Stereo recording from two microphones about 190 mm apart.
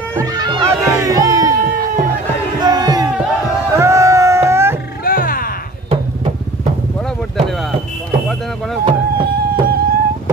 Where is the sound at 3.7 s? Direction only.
15° right (ahead or behind).